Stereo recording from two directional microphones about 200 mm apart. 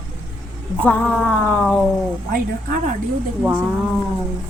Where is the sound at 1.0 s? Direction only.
5° left (ahead or behind).